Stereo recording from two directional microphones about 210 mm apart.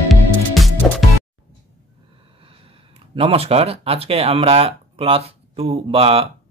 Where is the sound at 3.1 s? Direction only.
25° right (ahead or behind).